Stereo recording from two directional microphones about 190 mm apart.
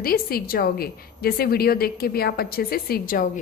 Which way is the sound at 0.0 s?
50° left (ahead or behind).